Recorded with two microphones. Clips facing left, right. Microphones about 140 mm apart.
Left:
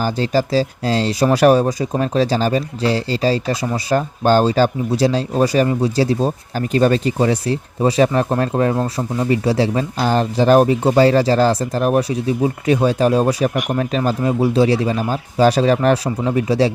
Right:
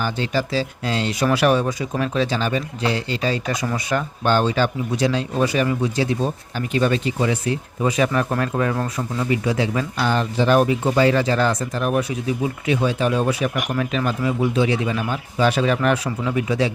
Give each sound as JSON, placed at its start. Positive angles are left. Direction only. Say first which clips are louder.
{"t": 0.0, "sound": "speech", "louder": "left 5 dB", "side_deg": 40}